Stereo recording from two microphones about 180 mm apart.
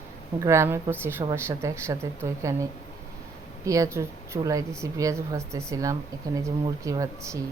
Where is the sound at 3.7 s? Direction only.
15° right (ahead or behind).